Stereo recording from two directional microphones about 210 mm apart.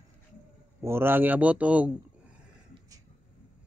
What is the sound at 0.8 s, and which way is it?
A man's voice, 10° right (ahead or behind).